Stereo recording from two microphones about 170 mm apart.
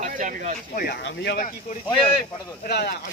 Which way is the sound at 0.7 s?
70° left (ahead or behind).